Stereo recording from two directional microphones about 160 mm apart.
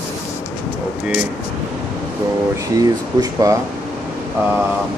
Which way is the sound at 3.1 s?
25° right (ahead or behind).